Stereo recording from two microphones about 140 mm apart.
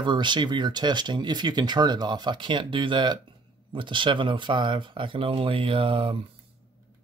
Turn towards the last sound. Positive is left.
turn(degrees=-40)  # may be behind; listen again after turning